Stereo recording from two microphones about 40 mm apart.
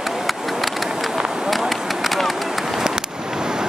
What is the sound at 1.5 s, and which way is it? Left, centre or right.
Run, centre.